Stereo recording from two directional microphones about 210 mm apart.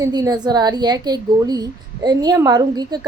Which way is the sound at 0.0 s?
20° right (ahead or behind).